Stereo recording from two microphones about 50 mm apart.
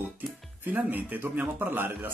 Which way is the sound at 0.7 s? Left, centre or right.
Right.